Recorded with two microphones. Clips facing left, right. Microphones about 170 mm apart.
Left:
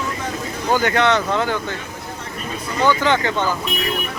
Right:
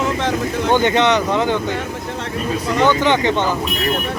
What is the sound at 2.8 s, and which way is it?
Speech, 20° right (ahead or behind).